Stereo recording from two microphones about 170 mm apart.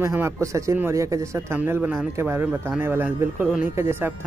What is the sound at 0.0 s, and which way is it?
Speech, 15° right (ahead or behind).